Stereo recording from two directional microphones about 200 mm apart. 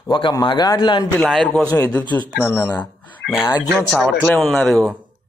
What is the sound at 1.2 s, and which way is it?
Speech, 5° left (ahead or behind).